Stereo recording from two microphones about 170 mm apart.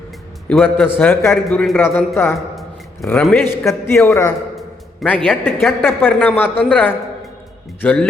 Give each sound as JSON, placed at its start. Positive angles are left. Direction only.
{"t": 0.4, "sound": "a man's voice", "side_deg": 5}
{"t": 1.8, "sound": "speech", "side_deg": 15}
{"t": 2.3, "sound": "a sound", "side_deg": 0}
{"t": 3.1, "sound": "speech", "side_deg": 5}
{"t": 4.5, "sound": "a sound", "side_deg": 5}
{"t": 5.4, "sound": "speech", "side_deg": 15}